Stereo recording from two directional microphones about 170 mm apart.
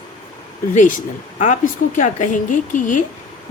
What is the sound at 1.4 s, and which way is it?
A woman's voice, 45° left (ahead or behind).